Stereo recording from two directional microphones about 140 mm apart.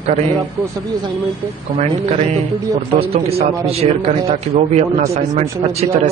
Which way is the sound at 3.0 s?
45° right (ahead or behind).